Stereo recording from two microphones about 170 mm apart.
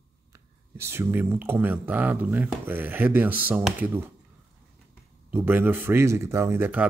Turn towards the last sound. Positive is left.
turn(degrees=-10)  # may be behind; listen again after turning